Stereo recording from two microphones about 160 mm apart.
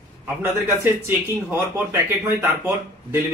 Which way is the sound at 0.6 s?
15° right (ahead or behind).